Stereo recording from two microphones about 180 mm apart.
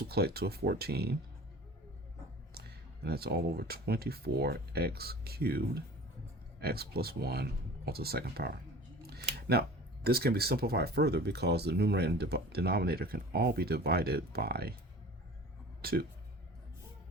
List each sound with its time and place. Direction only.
0.0 s speech: 60° right (ahead or behind)
2.6 s speech: 60° right (ahead or behind)
15.8 s speech: 60° right (ahead or behind)